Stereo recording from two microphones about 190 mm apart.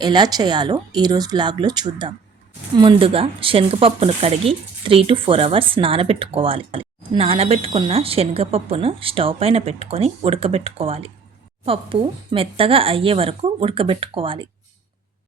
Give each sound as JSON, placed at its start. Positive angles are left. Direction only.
{"t": 0.0, "sound": "speech", "side_deg": -20}